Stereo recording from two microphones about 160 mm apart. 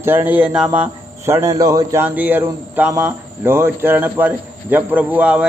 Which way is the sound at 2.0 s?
10° right (ahead or behind).